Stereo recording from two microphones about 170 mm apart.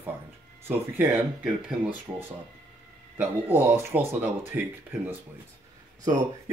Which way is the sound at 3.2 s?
10° right (ahead or behind).